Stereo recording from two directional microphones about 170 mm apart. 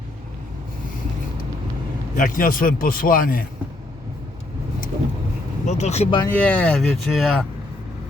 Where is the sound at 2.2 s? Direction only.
50° left (ahead or behind).